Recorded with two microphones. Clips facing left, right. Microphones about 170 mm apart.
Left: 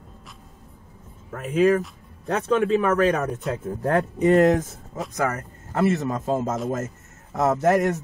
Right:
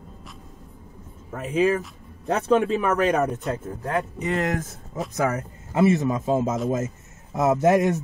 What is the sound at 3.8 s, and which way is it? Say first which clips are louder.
Speech: left 7 dB; 55° left (ahead or behind).